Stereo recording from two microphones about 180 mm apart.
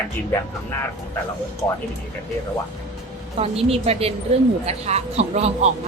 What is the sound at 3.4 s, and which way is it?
Speech, 35° right (ahead or behind).